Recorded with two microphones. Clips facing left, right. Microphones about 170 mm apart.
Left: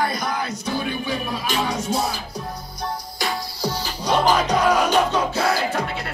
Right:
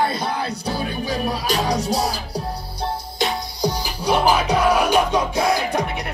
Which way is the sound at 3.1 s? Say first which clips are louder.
Right 3 dB; 20° right (ahead or behind).